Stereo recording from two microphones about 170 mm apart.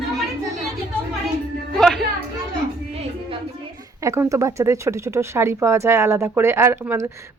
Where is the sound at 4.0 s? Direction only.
20° right (ahead or behind).